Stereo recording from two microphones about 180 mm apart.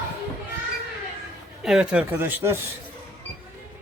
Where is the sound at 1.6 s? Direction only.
5° right (ahead or behind).